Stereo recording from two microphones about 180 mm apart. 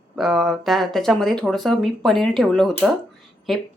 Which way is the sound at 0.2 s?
Centre (ahead or behind).